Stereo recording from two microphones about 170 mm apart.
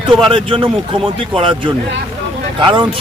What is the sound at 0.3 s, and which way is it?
Speech, 30° right (ahead or behind).